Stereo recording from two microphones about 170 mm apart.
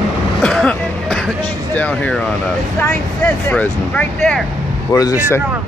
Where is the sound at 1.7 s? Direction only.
10° left (ahead or behind).